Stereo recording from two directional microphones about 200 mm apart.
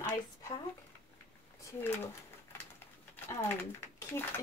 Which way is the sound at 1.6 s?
10° left (ahead or behind).